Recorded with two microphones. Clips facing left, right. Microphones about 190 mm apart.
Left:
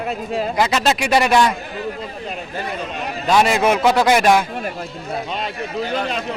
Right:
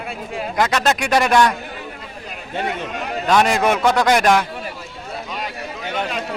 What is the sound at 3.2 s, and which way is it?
A man's voice, 5° left (ahead or behind).